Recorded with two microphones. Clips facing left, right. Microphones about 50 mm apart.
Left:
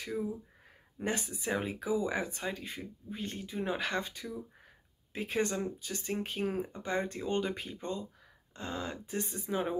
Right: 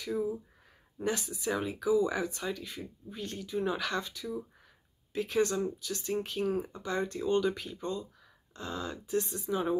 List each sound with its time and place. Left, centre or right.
0.9 s speech: left